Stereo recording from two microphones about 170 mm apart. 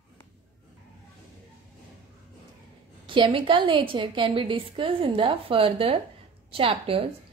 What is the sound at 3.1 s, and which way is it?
A woman's voice, 30° right (ahead or behind).